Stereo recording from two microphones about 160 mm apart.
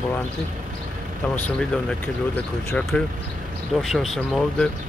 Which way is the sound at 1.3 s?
5° left (ahead or behind).